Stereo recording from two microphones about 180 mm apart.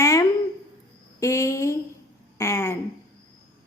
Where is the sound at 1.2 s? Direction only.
15° left (ahead or behind).